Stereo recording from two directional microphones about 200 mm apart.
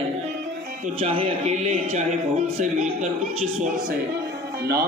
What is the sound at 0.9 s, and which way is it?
A man's voice, 30° right (ahead or behind).